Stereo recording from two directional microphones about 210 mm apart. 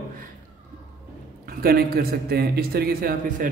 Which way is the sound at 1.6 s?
45° right (ahead or behind).